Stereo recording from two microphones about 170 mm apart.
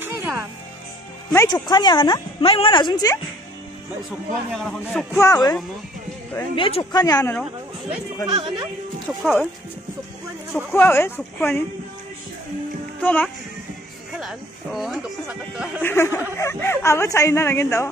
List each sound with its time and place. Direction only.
0.0 s music: 15° right (ahead or behind)
1.3 s a woman's voice: 20° left (ahead or behind)
4.5 s speech: 5° left (ahead or behind)
5.2 s a woman's voice: 20° left (ahead or behind)
8.3 s speech: 30° right (ahead or behind)
9.0 s speech: centre (ahead or behind)
10.7 s speech: 15° left (ahead or behind)
13.0 s speech: 10° left (ahead or behind)
14.2 s speech: centre (ahead or behind)
15.8 s speech: 15° left (ahead or behind)